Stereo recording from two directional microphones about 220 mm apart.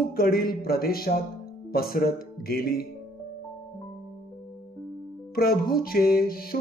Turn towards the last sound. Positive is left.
turn(degrees=40)  # may be behind; listen again after turning